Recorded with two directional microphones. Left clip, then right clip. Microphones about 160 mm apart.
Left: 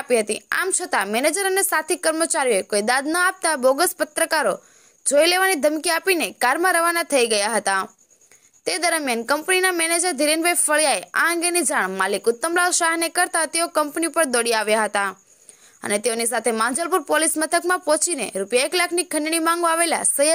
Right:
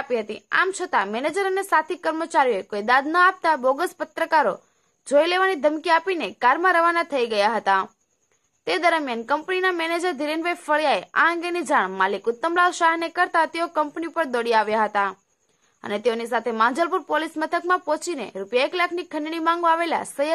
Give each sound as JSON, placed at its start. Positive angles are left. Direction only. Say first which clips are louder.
{"t": 0.0, "sound": "a woman's voice", "louder": "left 5 dB", "side_deg": 40}